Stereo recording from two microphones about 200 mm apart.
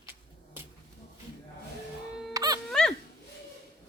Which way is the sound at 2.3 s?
20° right (ahead or behind).